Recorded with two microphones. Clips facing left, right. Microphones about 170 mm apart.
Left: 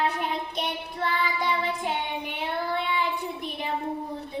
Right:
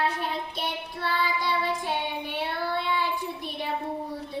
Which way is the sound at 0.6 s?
20° left (ahead or behind).